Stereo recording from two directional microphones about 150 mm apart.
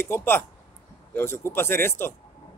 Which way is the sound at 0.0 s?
15° left (ahead or behind).